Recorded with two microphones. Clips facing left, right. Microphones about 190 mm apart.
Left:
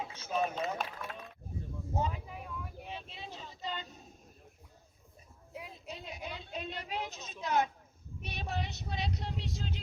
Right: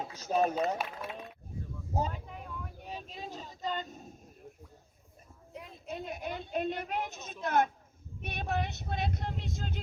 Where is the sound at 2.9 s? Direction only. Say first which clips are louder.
Right 6 dB; 40° right (ahead or behind).